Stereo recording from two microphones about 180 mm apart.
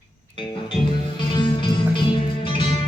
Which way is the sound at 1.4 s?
25° left (ahead or behind).